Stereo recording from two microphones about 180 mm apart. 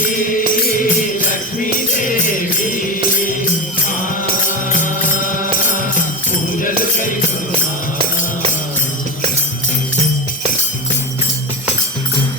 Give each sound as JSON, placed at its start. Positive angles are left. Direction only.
{"t": 0.0, "sound": "music", "side_deg": 50}
{"t": 4.4, "sound": "music", "side_deg": 45}
{"t": 6.6, "sound": "music", "side_deg": 50}